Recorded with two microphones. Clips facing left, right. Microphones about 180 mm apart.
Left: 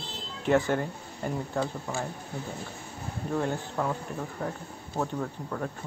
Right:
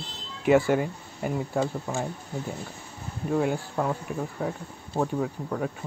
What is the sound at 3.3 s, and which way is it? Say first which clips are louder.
Speech: right 4 dB; 10° right (ahead or behind).